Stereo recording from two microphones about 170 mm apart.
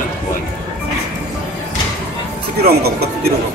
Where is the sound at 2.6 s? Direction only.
65° right (ahead or behind).